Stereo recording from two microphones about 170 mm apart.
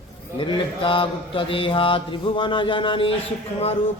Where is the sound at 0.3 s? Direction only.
30° left (ahead or behind).